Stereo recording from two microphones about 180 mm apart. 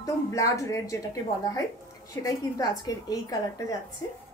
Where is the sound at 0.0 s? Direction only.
20° left (ahead or behind).